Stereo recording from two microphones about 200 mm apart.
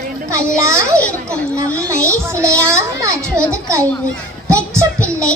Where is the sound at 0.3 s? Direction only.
15° right (ahead or behind).